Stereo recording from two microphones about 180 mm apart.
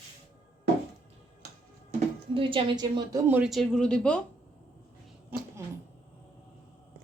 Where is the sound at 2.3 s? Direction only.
30° right (ahead or behind).